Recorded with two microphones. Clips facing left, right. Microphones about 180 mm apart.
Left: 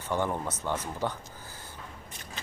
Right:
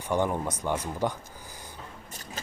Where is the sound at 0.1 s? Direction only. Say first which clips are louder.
Right 3 dB; 15° right (ahead or behind).